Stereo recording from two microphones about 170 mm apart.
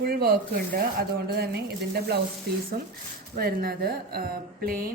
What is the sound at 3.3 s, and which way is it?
Speech, 65° right (ahead or behind).